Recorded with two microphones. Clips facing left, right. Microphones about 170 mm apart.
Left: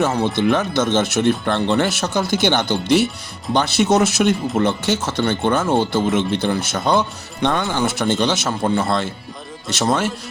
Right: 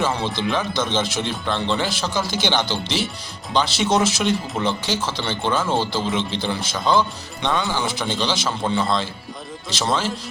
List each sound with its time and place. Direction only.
0.0 s speech: 50° left (ahead or behind)